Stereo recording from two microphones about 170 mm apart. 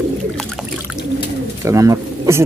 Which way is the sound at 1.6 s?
20° right (ahead or behind).